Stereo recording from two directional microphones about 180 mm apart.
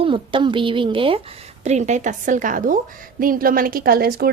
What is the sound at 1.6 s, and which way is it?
A woman's voice, 40° right (ahead or behind).